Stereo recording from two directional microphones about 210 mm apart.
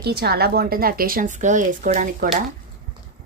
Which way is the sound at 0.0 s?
50° right (ahead or behind).